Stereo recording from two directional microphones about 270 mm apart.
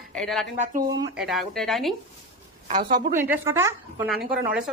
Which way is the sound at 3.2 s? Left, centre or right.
Centre.